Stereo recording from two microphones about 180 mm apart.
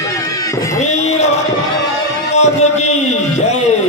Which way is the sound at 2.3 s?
40° left (ahead or behind).